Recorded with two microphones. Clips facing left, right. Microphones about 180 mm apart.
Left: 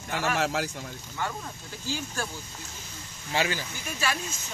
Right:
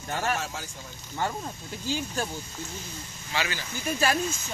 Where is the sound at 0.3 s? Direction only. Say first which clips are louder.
Left 4 dB; 75° left (ahead or behind).